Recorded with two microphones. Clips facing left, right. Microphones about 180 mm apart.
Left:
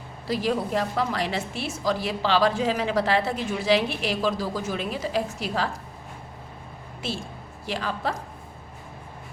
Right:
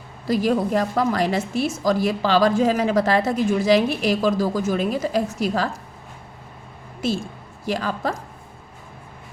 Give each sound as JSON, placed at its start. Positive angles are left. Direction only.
{"t": 0.3, "sound": "a woman's voice", "side_deg": -45}
{"t": 7.0, "sound": "a woman's voice", "side_deg": -45}